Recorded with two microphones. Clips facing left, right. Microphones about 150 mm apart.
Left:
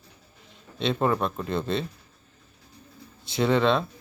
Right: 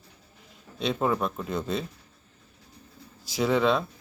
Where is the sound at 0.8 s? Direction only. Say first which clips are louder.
Left 2 dB; 5° right (ahead or behind).